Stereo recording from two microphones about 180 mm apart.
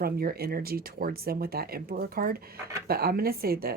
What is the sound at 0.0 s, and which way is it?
Speech, 55° right (ahead or behind).